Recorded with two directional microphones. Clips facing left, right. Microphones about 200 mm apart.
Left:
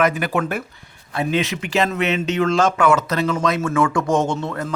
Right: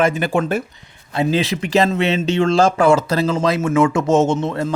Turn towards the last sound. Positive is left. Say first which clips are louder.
# right 5 dB
turn(degrees=-25)  # may be behind; listen again after turning